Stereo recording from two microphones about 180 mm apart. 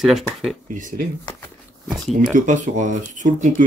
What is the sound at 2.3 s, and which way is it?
Speech, 45° right (ahead or behind).